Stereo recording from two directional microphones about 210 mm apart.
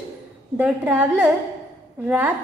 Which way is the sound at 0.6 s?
5° right (ahead or behind).